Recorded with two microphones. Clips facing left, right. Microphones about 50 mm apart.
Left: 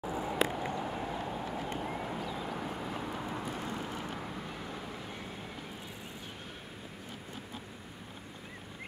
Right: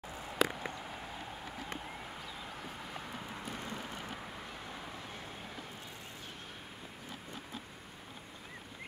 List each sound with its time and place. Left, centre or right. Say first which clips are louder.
0.0 s vehicle: left 2 dB; centre
1.5 s run: left 7 dB; centre
2.3 s vehicle: left 7 dB; centre